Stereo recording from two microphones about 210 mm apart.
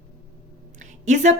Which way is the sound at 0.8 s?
35° right (ahead or behind).